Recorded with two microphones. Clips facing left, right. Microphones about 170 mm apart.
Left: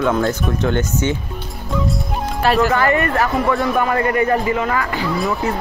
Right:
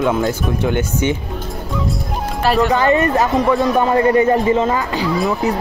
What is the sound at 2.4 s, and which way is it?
Speech, centre (ahead or behind).